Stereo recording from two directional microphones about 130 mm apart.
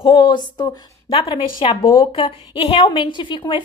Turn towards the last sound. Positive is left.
turn(degrees=35)  # may be behind; listen again after turning